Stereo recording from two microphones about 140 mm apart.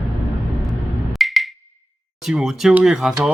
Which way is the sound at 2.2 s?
5° right (ahead or behind).